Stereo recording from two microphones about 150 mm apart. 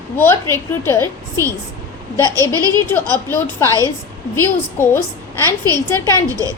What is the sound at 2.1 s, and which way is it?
A child's voice, 20° left (ahead or behind).